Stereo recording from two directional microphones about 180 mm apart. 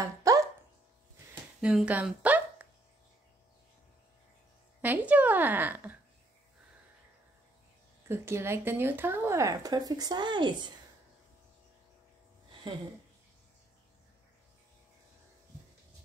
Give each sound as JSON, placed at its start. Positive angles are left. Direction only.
{"t": 0.2, "sound": "dog", "side_deg": -20}
{"t": 1.6, "sound": "speech", "side_deg": -5}
{"t": 4.8, "sound": "speech", "side_deg": -10}
{"t": 8.1, "sound": "speech", "side_deg": -15}